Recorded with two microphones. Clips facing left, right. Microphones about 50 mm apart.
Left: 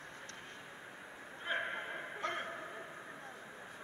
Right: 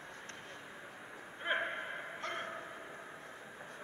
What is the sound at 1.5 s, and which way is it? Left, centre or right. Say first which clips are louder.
Gasp: right 3 dB; right.